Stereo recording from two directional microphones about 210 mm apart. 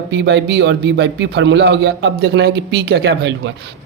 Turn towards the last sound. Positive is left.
turn(degrees=-55)  # may be behind; listen again after turning